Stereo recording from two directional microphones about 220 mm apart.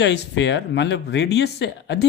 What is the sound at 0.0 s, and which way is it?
Speech, 50° left (ahead or behind).